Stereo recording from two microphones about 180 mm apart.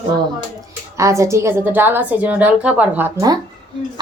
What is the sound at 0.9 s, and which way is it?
A woman's voice, 15° right (ahead or behind).